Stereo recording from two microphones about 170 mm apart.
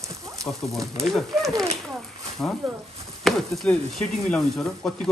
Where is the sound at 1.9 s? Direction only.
Centre (ahead or behind).